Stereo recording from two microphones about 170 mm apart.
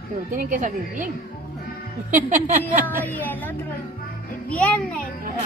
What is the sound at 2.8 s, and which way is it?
Speech, 10° left (ahead or behind).